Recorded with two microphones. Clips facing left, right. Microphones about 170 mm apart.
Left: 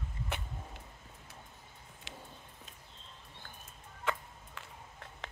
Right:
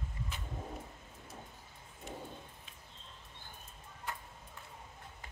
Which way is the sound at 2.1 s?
90° left.